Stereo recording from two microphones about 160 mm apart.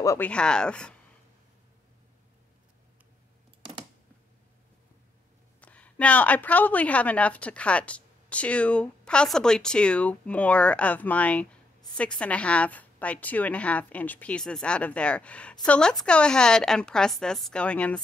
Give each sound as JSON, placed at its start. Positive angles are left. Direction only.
{"t": 0.0, "sound": "speech", "side_deg": 20}
{"t": 0.3, "sound": "speech", "side_deg": 5}
{"t": 5.6, "sound": "a woman's voice", "side_deg": 10}